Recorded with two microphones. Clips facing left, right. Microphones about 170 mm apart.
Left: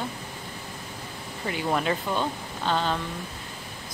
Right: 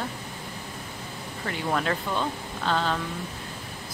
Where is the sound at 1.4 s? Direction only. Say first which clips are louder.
Left 1 dB; 10° left (ahead or behind).